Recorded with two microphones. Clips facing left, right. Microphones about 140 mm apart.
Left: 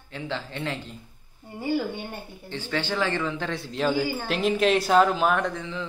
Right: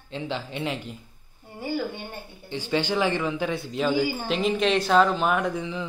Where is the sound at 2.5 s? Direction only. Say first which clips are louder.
Right 3 dB; 15° right (ahead or behind).